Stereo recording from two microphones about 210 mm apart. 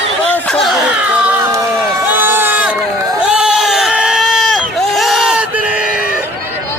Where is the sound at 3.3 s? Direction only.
5° right (ahead or behind).